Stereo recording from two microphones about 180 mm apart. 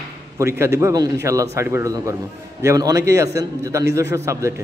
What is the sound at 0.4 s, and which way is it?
A man's voice, 15° right (ahead or behind).